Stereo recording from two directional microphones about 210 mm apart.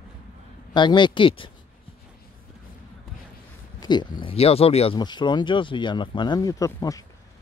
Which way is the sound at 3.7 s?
20° left (ahead or behind).